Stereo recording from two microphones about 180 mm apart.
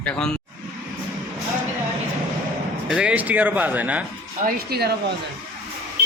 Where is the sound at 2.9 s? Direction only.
5° right (ahead or behind).